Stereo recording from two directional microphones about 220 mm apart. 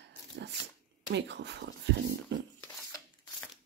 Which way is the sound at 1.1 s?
50° right (ahead or behind).